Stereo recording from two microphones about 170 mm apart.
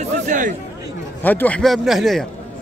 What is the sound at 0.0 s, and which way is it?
Chatter, 45° right (ahead or behind).